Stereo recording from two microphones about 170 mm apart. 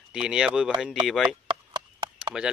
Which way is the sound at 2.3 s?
5° right (ahead or behind).